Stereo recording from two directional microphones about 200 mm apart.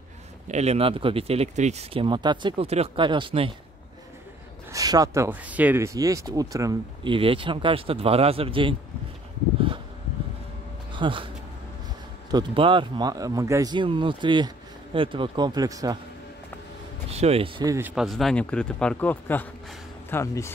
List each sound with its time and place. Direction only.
0.5 s speech: 35° right (ahead or behind)
4.7 s speech: 15° right (ahead or behind)
10.9 s speech: 25° right (ahead or behind)
12.3 s speech: 25° right (ahead or behind)
17.1 s speech: 30° right (ahead or behind)
17.6 s speech: 10° right (ahead or behind); by 20.5 s 10° left (ahead or behind)